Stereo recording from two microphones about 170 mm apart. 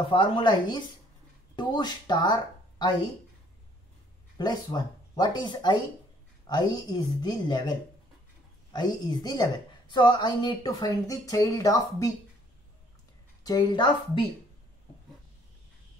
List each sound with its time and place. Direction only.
0.1 s a woman's voice: 30° left (ahead or behind)
4.4 s a woman's voice: 25° left (ahead or behind)
8.7 s a woman's voice: 25° left (ahead or behind)
13.4 s a woman's voice: 25° left (ahead or behind)